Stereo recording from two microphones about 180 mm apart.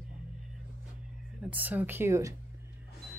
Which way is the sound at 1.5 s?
10° right (ahead or behind).